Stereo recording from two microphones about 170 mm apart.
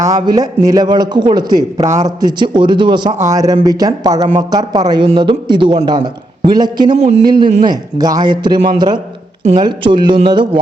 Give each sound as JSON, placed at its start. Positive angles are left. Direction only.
{"t": 0.0, "sound": "a man's voice", "side_deg": -20}
{"t": 9.6, "sound": "a man's voice", "side_deg": -25}